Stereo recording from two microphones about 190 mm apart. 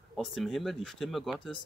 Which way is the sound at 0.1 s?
Centre (ahead or behind).